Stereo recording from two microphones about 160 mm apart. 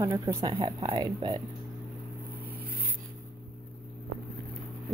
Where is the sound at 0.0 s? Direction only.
15° right (ahead or behind).